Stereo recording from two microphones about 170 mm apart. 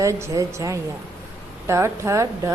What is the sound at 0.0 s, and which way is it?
Music, 15° right (ahead or behind).